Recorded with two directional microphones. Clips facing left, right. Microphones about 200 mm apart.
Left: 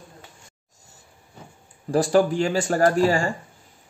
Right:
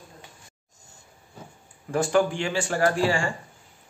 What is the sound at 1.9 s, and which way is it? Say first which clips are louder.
Speech: left 3 dB; 35° left (ahead or behind).